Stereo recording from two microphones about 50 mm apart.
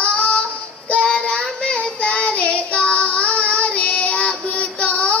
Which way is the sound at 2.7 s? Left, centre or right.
Left.